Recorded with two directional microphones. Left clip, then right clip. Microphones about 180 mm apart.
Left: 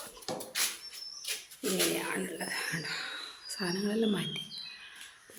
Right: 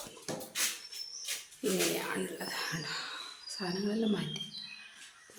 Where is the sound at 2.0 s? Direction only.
5° left (ahead or behind).